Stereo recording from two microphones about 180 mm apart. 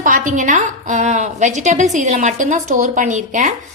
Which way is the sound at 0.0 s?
45° right (ahead or behind).